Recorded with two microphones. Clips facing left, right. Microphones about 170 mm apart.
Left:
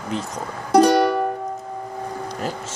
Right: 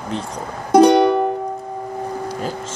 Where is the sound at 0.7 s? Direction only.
20° right (ahead or behind).